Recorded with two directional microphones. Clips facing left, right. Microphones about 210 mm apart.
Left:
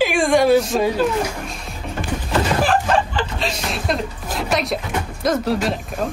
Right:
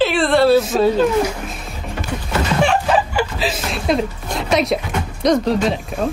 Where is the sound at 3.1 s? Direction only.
5° right (ahead or behind).